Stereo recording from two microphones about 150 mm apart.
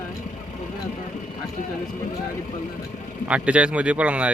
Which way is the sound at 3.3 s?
10° right (ahead or behind).